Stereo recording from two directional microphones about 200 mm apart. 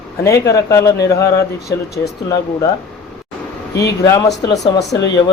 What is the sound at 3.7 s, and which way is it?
Speech, 55° left (ahead or behind).